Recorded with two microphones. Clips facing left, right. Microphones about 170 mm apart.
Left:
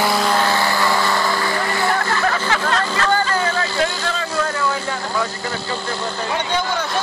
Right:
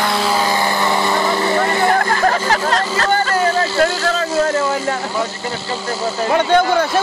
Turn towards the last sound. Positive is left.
turn(degrees=-55)  # may be behind; listen again after turning